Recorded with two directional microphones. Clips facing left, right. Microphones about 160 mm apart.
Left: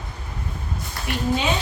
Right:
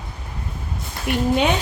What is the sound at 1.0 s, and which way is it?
Speech, 60° right (ahead or behind).